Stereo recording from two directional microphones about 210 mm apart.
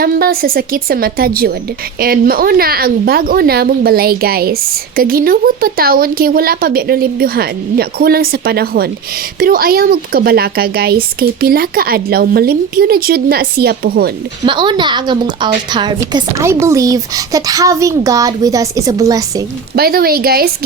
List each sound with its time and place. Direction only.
0.0 s speech: 45° right (ahead or behind)
14.4 s a woman's voice: 20° right (ahead or behind)
19.7 s speech: 45° right (ahead or behind)